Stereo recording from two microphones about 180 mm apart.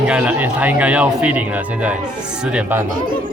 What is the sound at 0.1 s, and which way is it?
Speech, 10° right (ahead or behind).